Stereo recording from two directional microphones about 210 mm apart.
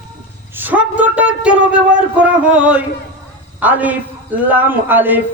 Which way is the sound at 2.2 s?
5° right (ahead or behind).